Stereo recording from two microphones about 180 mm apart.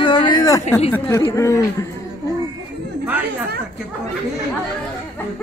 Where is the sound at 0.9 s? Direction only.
15° left (ahead or behind).